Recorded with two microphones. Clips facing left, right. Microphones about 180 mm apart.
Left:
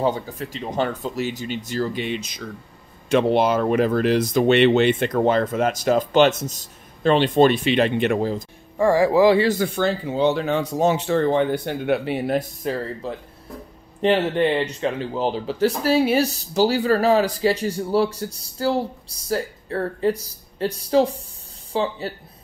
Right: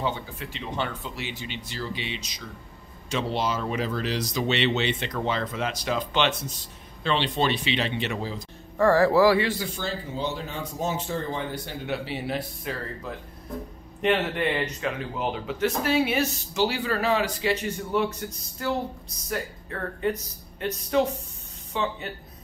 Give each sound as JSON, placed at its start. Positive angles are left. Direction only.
{"t": 0.0, "sound": "speech", "side_deg": 40}
{"t": 8.7, "sound": "speech", "side_deg": 15}
{"t": 9.4, "sound": "speech", "side_deg": 50}
{"t": 13.0, "sound": "speech", "side_deg": 30}